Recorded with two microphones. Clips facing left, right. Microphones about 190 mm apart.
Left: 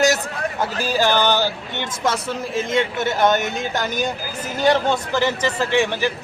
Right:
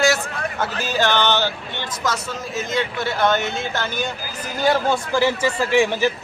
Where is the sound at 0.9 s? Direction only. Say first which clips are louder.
Left 1 dB; 10° left (ahead or behind).